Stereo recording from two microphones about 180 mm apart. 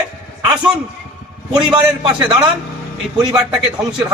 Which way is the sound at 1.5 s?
25° right (ahead or behind).